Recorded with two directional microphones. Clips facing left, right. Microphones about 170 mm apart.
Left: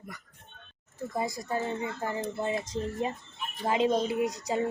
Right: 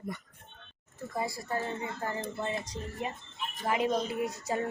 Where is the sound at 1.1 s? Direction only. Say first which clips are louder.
Left 2 dB; 20° left (ahead or behind).